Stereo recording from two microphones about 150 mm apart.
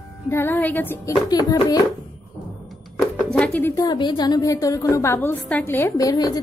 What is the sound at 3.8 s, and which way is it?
A woman's voice, 30° left (ahead or behind).